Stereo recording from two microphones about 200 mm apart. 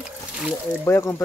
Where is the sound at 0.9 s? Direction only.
10° left (ahead or behind).